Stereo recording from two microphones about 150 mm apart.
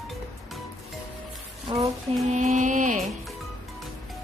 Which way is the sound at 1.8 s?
50° right (ahead or behind).